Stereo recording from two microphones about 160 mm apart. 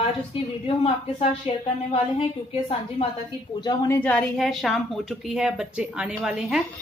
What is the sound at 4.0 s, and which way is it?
A woman's voice, 10° left (ahead or behind).